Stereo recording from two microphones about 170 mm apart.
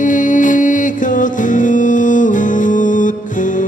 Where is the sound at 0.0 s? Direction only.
50° left (ahead or behind).